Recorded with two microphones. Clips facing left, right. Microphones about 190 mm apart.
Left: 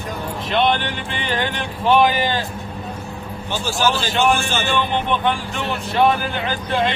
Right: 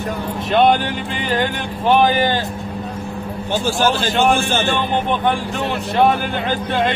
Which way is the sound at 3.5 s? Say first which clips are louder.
Right 3 dB; 50° right (ahead or behind).